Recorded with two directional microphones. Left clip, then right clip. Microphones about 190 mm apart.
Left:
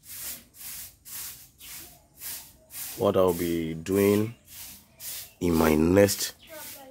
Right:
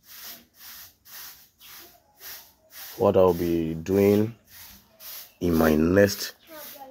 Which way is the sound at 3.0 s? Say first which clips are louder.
Right 4 dB; 5° left (ahead or behind).